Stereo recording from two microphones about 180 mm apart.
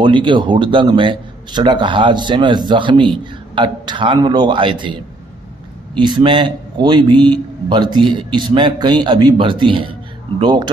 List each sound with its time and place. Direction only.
0.0 s a man's voice: 25° right (ahead or behind)
5.9 s a man's voice: 25° right (ahead or behind)